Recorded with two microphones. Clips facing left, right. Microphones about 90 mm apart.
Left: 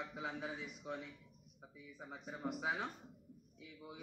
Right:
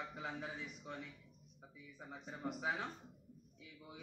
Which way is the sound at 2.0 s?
5° left (ahead or behind).